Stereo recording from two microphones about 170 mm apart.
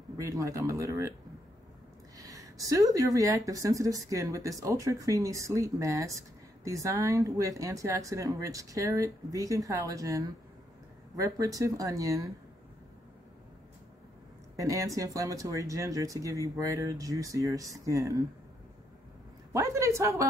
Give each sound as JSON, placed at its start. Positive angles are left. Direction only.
{"t": 0.2, "sound": "a woman's voice", "side_deg": -20}
{"t": 2.1, "sound": "a woman's voice", "side_deg": -20}
{"t": 14.6, "sound": "a woman's voice", "side_deg": -20}
{"t": 19.5, "sound": "a woman's voice", "side_deg": -15}